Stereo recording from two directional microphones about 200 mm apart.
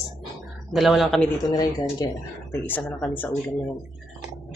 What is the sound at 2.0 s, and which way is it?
Speech, 20° left (ahead or behind).